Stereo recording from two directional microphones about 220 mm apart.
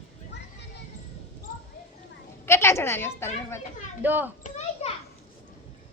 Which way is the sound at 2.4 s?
10° left (ahead or behind).